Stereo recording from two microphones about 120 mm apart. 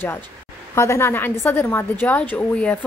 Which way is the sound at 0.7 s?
25° left (ahead or behind).